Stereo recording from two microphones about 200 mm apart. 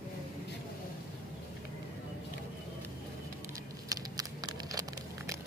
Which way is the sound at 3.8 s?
20° right (ahead or behind).